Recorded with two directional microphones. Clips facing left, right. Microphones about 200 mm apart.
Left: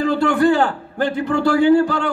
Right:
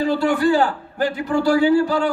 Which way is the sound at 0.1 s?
55° left (ahead or behind).